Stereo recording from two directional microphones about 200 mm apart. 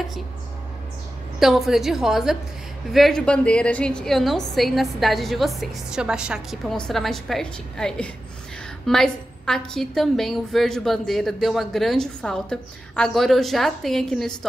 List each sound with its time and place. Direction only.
1.4 s a woman's voice: centre (ahead or behind)